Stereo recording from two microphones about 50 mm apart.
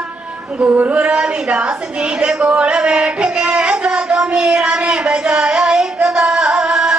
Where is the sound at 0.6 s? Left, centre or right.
Right.